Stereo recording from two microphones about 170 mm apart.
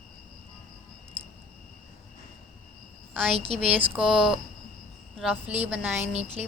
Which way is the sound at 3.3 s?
35° right (ahead or behind).